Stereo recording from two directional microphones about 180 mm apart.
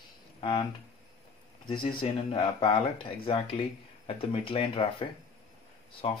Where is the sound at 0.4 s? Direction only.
25° left (ahead or behind).